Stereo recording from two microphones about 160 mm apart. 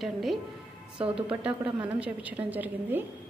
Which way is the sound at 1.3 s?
5° right (ahead or behind).